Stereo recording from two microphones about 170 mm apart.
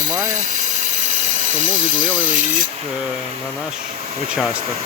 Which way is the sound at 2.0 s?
10° left (ahead or behind).